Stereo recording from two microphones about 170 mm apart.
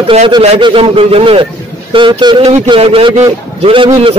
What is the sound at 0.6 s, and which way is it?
A man's voice, 30° right (ahead or behind).